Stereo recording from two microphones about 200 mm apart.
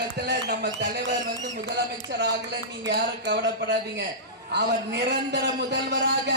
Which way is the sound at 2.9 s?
60° right (ahead or behind).